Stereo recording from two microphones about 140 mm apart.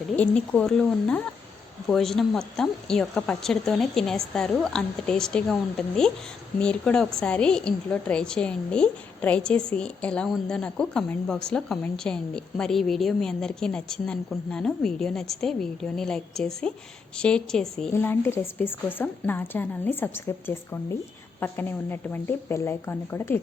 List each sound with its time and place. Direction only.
0.2 s a woman's voice: 10° left (ahead or behind)
17.9 s a woman's voice: 15° left (ahead or behind)